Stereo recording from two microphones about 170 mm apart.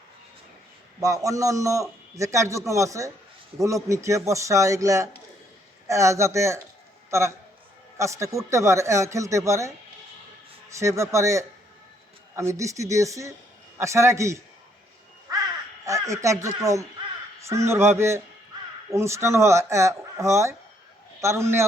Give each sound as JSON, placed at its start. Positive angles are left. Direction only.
{"t": 0.9, "sound": "a man's voice", "side_deg": -20}
{"t": 15.9, "sound": "speech", "side_deg": -20}